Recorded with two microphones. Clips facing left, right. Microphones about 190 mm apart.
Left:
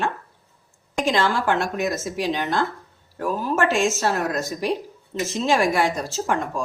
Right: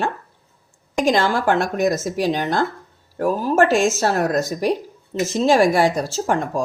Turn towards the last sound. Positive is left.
turn(degrees=-35)  # may be behind; listen again after turning